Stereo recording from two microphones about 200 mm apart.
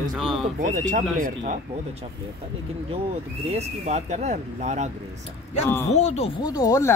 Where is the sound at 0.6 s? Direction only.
40° right (ahead or behind).